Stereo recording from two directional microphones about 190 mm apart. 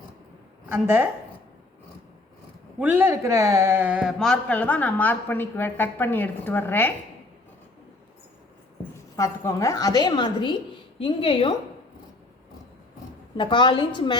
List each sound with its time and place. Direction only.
0.7 s a woman's voice: 10° right (ahead or behind)
2.7 s speech: 10° right (ahead or behind); by 6.9 s 10° left (ahead or behind)
9.1 s a woman's voice: 15° left (ahead or behind)
13.3 s a woman's voice: 25° left (ahead or behind)